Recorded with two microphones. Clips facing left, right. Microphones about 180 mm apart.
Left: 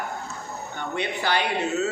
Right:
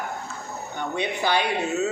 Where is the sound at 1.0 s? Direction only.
15° right (ahead or behind).